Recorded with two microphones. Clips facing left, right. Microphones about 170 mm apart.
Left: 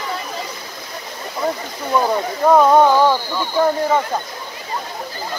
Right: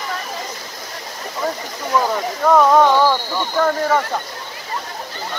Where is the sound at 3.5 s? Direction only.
20° left (ahead or behind).